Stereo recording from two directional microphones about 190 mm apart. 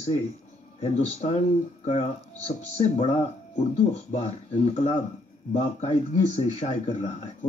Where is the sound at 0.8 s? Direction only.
35° left (ahead or behind).